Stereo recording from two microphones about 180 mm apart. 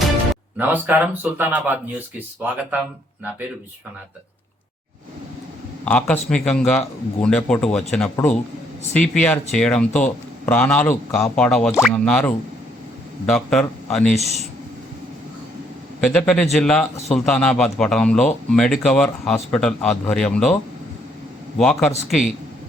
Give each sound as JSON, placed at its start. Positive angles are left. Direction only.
{"t": 0.5, "sound": "speech", "side_deg": -10}
{"t": 5.8, "sound": "a man's voice", "side_deg": 5}
{"t": 14.2, "sound": "speech", "side_deg": -35}
{"t": 16.0, "sound": "speech", "side_deg": 5}
{"t": 21.6, "sound": "speech", "side_deg": 5}